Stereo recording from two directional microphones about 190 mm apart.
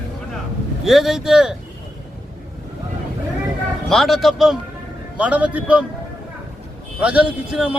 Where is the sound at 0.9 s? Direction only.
Centre (ahead or behind).